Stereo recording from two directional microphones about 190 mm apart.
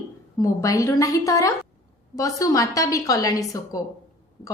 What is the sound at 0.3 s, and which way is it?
A woman's voice, 15° left (ahead or behind).